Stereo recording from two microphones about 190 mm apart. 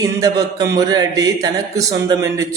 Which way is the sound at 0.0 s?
20° right (ahead or behind).